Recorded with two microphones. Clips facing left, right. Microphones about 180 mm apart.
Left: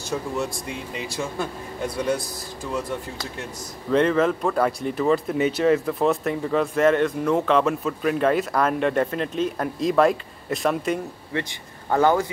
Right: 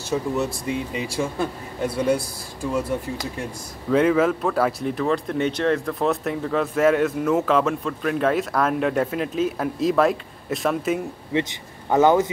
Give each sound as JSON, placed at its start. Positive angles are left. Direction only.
{"t": 0.1, "sound": "speech", "side_deg": -10}
{"t": 3.9, "sound": "speech", "side_deg": -5}
{"t": 11.3, "sound": "speech", "side_deg": -20}